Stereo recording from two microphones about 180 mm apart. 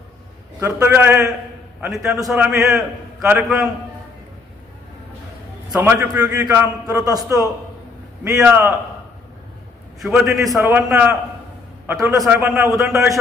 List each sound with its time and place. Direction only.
0.6 s a man's voice: 15° right (ahead or behind)
5.7 s a man's voice: 10° right (ahead or behind)
8.2 s a man's voice: 10° right (ahead or behind)
10.1 s a man's voice: 10° right (ahead or behind)